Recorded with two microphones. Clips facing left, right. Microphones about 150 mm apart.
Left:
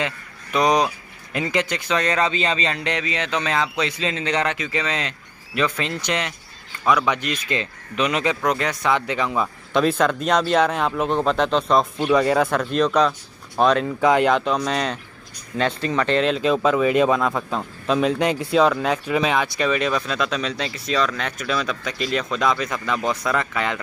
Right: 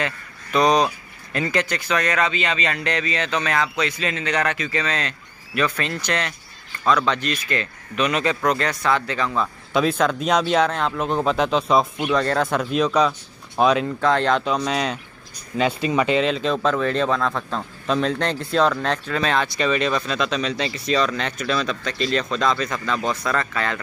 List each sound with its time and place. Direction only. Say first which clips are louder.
0.0 s speech: even; 15° left (ahead or behind)
9.7 s speech: left 1 dB; centre (ahead or behind)
12.1 s speech: left 5 dB; 5° left (ahead or behind)
14.0 s speech: left 3 dB; 10° left (ahead or behind)